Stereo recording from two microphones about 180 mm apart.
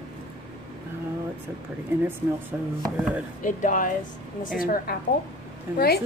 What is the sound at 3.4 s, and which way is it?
Speech, 45° left (ahead or behind).